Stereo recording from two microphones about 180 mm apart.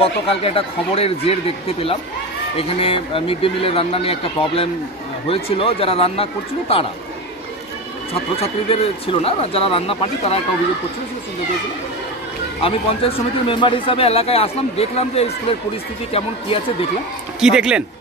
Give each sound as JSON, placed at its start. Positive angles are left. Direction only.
{"t": 0.0, "sound": "speech", "side_deg": 30}
{"t": 2.5, "sound": "speech", "side_deg": 30}
{"t": 8.1, "sound": "speech", "side_deg": 30}
{"t": 12.6, "sound": "speech", "side_deg": 30}
{"t": 17.4, "sound": "speech", "side_deg": -5}